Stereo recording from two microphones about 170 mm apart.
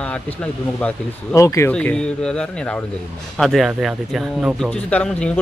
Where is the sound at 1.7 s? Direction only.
5° left (ahead or behind).